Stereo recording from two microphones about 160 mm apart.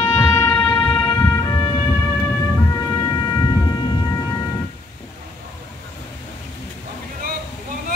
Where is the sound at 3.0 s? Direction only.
25° left (ahead or behind).